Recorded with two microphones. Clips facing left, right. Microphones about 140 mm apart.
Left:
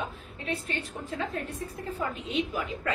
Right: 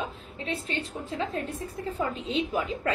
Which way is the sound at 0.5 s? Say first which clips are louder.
Right 1 dB; 25° right (ahead or behind).